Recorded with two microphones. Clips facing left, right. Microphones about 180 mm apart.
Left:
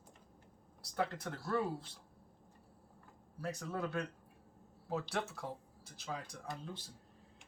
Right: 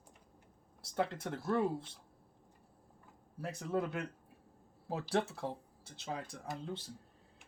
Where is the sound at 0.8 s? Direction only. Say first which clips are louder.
Right 2 dB; 25° right (ahead or behind).